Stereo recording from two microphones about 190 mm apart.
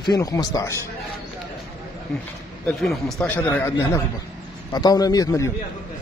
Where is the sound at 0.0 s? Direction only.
20° left (ahead or behind).